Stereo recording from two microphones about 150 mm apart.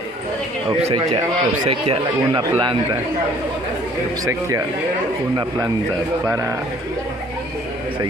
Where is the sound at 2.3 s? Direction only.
30° right (ahead or behind).